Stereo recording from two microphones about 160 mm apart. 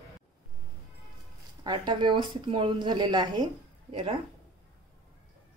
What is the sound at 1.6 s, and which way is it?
Speech, 30° right (ahead or behind).